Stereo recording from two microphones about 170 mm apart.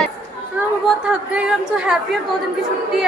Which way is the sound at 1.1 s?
5° right (ahead or behind).